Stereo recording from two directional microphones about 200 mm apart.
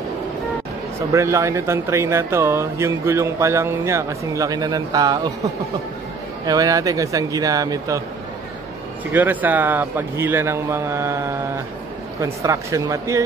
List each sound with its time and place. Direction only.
1.1 s speech: 15° right (ahead or behind)
6.4 s speech: 20° right (ahead or behind)
9.1 s speech: 10° right (ahead or behind)